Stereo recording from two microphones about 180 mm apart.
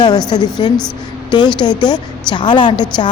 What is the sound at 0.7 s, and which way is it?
Speech, 5° left (ahead or behind).